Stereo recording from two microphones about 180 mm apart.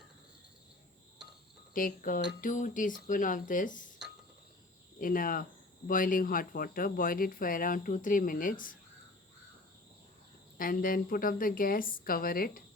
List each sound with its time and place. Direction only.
1.7 s speech: 50° left (ahead or behind)
4.9 s speech: 50° left (ahead or behind)
10.6 s speech: 50° left (ahead or behind)